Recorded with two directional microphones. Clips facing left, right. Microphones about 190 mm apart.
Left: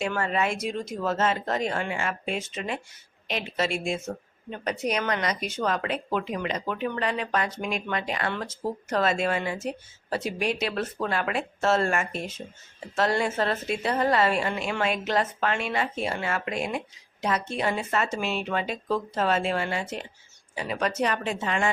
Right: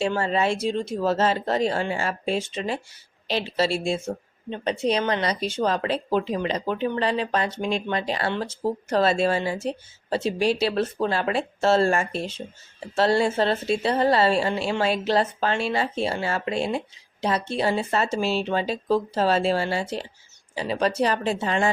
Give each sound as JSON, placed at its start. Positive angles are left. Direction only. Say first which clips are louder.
{"t": 0.0, "sound": "speech", "louder": "right 4 dB", "side_deg": -30}